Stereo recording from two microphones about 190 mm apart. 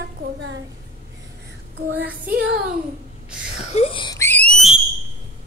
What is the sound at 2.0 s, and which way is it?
Speech, 10° right (ahead or behind).